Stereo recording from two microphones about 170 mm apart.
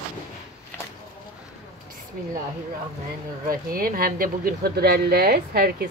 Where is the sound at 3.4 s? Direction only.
55° right (ahead or behind).